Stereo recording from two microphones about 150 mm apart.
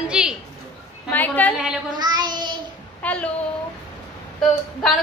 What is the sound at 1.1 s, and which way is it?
Speech, 10° left (ahead or behind).